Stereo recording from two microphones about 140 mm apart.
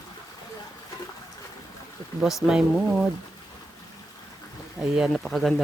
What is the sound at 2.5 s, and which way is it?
Speech, 5° right (ahead or behind).